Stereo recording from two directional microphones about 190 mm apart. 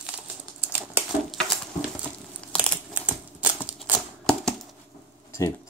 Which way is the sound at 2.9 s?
5° right (ahead or behind).